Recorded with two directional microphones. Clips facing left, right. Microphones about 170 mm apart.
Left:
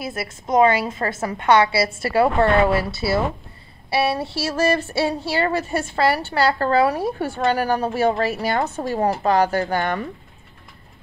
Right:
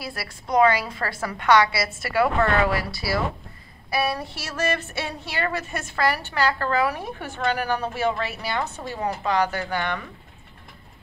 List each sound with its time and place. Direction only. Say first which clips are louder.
0.0 s a woman's voice: left 6 dB; 20° left (ahead or behind); by 10.0 s 45° left (ahead or behind)